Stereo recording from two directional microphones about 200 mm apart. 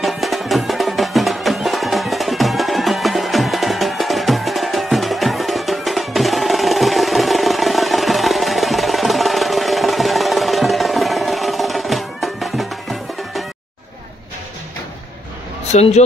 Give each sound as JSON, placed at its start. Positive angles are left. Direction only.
{"t": 0.0, "sound": "music", "side_deg": 0}
{"t": 15.7, "sound": "speech", "side_deg": 35}